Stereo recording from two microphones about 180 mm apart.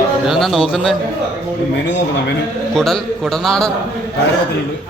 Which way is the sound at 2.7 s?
Centre (ahead or behind).